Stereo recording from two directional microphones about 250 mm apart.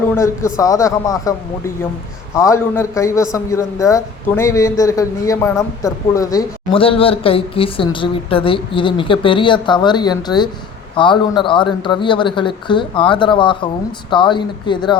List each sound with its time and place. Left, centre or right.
0.1 s a man's voice: centre